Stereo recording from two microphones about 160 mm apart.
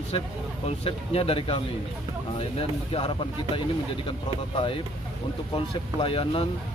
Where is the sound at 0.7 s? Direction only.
35° left (ahead or behind).